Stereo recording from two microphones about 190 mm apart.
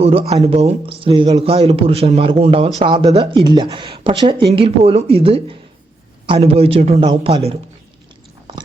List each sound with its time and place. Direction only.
0.0 s a man's voice: 30° right (ahead or behind)